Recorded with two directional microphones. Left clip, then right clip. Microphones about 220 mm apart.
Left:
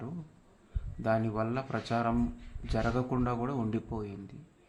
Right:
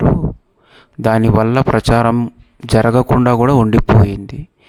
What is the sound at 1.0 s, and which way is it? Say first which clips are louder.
Speech: right 17 dB; 55° right (ahead or behind).